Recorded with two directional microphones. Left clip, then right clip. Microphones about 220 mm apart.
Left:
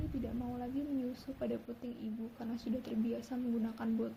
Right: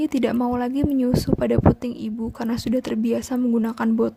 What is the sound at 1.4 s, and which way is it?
A woman's voice, 40° right (ahead or behind).